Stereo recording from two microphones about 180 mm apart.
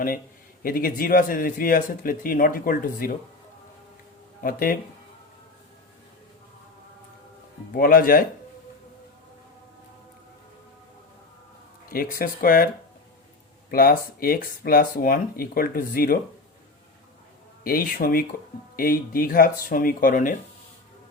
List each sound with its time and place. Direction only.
0.6 s speech: 50° left (ahead or behind)
4.4 s speech: 50° left (ahead or behind)
7.7 s speech: 50° left (ahead or behind)
11.9 s speech: 55° left (ahead or behind)
17.6 s speech: 50° left (ahead or behind)